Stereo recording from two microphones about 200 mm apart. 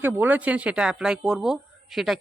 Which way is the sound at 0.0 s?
10° right (ahead or behind).